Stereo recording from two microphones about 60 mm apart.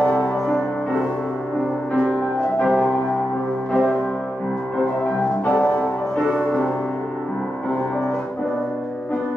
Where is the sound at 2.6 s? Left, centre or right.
Centre.